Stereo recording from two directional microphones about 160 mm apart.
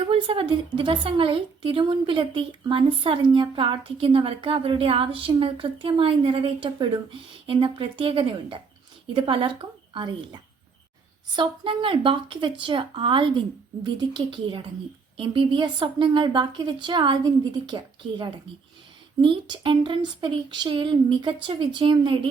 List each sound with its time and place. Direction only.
0.0 s a woman's voice: 35° right (ahead or behind)